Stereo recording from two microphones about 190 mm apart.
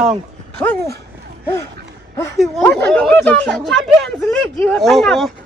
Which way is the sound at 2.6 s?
10° left (ahead or behind).